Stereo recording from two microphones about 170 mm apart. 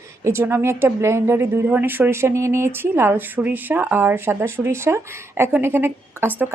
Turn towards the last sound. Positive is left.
turn(degrees=-15)  # may be behind; listen again after turning